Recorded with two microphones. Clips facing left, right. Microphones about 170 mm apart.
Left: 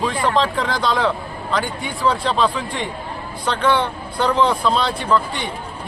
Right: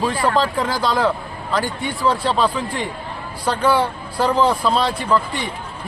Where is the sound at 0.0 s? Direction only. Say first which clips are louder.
Even; 5° right (ahead or behind).